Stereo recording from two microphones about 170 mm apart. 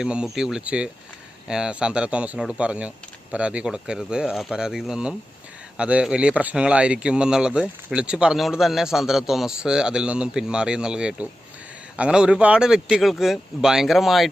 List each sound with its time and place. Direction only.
0.0 s speech: 5° right (ahead or behind)